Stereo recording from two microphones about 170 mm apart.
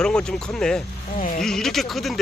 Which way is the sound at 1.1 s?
50° left (ahead or behind).